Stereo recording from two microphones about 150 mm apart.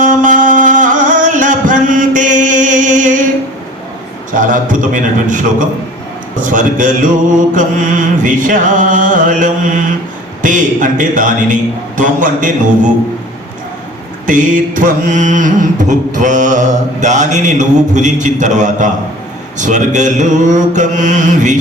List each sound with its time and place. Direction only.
0.2 s music: 60° right (ahead or behind)
4.4 s carnatic music: 60° right (ahead or behind)
14.3 s carnatic music: 60° right (ahead or behind)